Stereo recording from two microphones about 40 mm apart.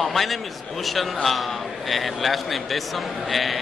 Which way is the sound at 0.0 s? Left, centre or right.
Centre.